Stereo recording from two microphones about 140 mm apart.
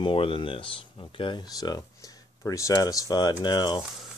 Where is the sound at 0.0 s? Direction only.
40° left (ahead or behind).